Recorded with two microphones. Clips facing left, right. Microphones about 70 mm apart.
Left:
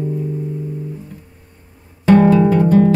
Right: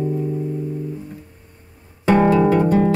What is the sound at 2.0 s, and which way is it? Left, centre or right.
Guitar, centre.